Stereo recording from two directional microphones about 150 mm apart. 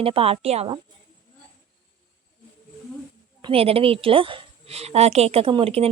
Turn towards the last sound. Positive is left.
turn(degrees=-40)  # may be behind; listen again after turning